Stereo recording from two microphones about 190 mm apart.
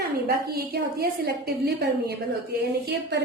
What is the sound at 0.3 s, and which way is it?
A woman's voice, 55° right (ahead or behind).